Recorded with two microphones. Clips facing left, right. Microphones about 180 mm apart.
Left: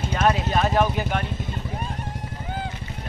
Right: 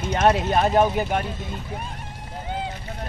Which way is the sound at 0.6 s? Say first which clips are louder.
Right 3 dB; 20° right (ahead or behind).